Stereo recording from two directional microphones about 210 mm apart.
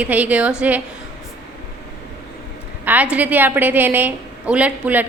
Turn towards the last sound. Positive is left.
turn(degrees=-5)  # may be behind; listen again after turning